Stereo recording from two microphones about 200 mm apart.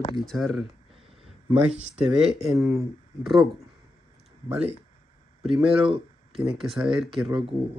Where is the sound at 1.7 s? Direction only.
30° right (ahead or behind).